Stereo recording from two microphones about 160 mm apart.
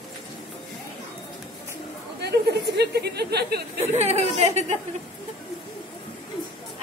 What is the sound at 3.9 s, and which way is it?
Speech, 40° right (ahead or behind).